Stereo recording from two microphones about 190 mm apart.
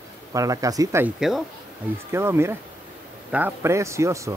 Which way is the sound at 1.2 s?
Centre (ahead or behind).